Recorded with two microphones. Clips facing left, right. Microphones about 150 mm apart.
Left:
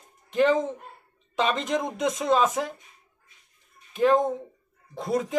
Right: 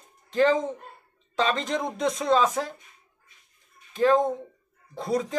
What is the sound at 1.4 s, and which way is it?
Speech, 10° left (ahead or behind).